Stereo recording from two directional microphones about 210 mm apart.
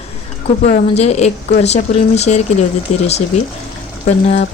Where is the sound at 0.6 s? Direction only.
30° left (ahead or behind).